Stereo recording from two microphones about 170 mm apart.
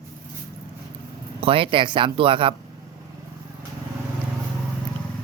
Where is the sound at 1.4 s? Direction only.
30° right (ahead or behind).